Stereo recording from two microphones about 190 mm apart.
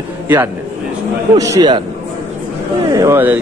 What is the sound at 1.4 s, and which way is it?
Speech, 20° right (ahead or behind).